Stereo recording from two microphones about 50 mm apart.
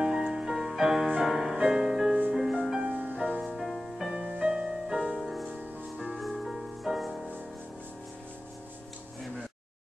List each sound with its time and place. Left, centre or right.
0.0 s music: centre
4.2 s music: right
5.1 s music: centre